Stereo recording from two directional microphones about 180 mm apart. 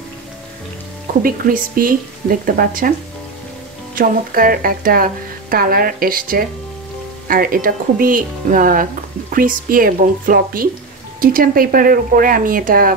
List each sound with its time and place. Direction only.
1.2 s speech: 50° right (ahead or behind)
3.9 s speech: 50° right (ahead or behind)